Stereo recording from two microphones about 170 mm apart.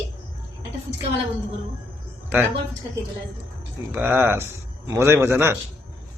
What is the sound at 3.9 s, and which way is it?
Speech, 10° right (ahead or behind).